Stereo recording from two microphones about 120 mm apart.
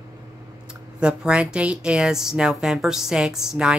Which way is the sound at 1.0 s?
10° right (ahead or behind).